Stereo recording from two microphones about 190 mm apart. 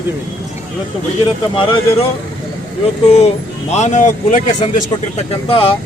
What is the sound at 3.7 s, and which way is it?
Speech, 40° left (ahead or behind).